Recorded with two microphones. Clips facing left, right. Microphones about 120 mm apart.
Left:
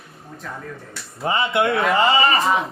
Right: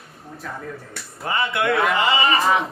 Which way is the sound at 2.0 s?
35° left (ahead or behind).